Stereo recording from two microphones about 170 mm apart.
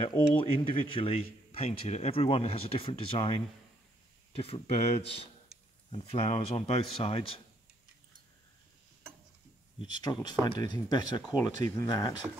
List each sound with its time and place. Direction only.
0.0 s speech: 25° left (ahead or behind)
9.8 s speech: 25° left (ahead or behind)